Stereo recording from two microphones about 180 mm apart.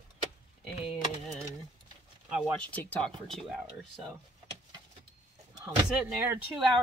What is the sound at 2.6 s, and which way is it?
Speech, 10° left (ahead or behind).